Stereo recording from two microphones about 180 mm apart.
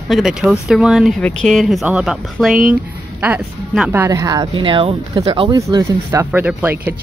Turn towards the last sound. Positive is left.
turn(degrees=-10)  # may be behind; listen again after turning